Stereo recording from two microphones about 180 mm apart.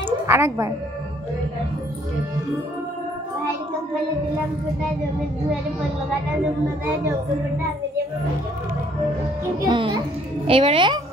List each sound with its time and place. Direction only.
0.3 s a woman's voice: 15° right (ahead or behind)
9.7 s a child's voice: 30° right (ahead or behind)